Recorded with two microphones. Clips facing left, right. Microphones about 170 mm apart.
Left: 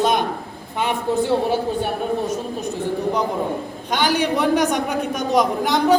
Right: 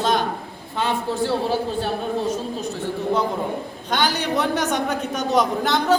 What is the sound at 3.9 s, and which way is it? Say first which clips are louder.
A man's voice: left 2 dB; 10° left (ahead or behind).